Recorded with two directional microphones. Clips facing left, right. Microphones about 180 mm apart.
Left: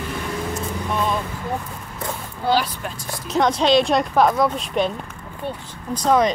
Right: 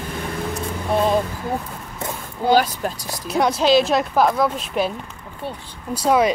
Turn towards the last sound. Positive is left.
turn(degrees=-10)  # may be behind; listen again after turning